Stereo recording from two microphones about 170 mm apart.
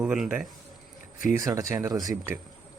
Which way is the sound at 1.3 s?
20° right (ahead or behind).